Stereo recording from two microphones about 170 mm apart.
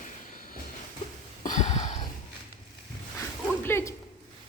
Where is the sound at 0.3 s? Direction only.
55° left (ahead or behind).